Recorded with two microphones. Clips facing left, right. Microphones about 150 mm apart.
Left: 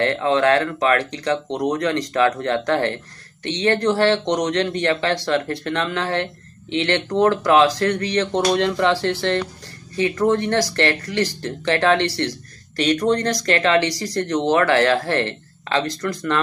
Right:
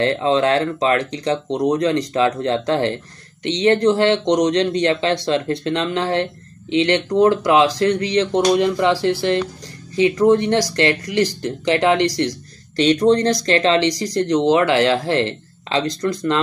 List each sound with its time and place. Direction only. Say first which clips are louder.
0.0 s speech: right 1 dB; 20° right (ahead or behind)